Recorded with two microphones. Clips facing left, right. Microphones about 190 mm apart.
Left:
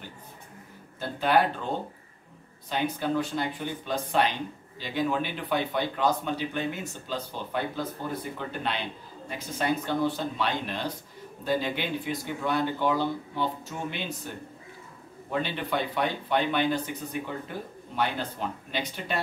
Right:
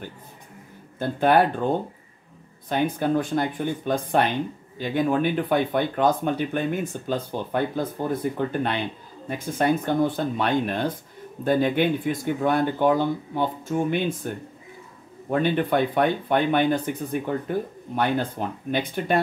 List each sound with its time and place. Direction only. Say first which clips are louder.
0.9 s speech: right 5 dB; 50° right (ahead or behind)
2.7 s speech: right 5 dB; 50° right (ahead or behind)